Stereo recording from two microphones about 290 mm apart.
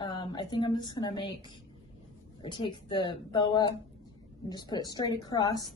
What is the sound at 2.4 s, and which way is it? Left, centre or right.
A woman's voice, centre.